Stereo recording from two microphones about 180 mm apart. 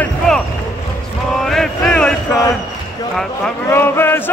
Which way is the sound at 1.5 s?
Centre (ahead or behind).